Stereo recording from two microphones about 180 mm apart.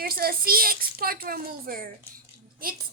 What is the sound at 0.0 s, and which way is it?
A woman's voice, 55° right (ahead or behind).